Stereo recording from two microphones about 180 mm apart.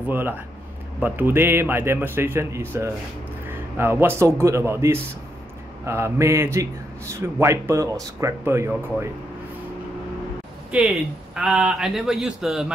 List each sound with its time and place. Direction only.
0.1 s a man's voice: 10° right (ahead or behind)
10.7 s a man's voice: 5° right (ahead or behind)